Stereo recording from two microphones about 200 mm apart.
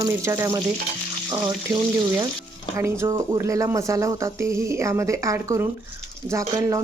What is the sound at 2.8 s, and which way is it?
Speech, 15° right (ahead or behind).